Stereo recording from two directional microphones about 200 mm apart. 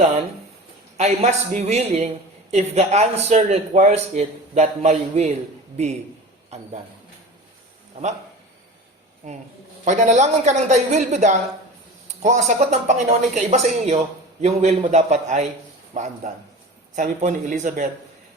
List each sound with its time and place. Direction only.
0.9 s a man's voice: 35° right (ahead or behind)
9.8 s a man's voice: 35° right (ahead or behind)